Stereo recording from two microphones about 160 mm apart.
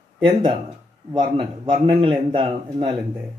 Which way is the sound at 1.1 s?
30° right (ahead or behind).